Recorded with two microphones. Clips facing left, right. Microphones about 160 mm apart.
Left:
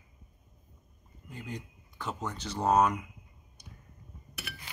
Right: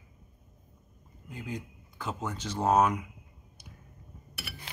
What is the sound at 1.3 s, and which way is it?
Speech, centre (ahead or behind).